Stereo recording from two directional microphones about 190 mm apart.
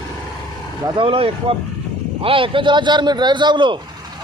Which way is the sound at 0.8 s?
30° right (ahead or behind).